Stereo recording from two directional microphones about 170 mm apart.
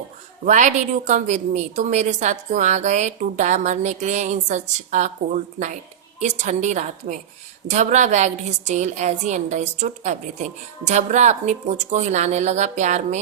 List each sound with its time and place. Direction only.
0.4 s a woman's voice: 45° right (ahead or behind)